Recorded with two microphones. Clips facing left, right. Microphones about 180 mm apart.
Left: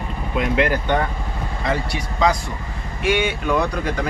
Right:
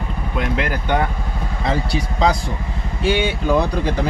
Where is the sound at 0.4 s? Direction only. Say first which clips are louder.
Left 3 dB; centre (ahead or behind).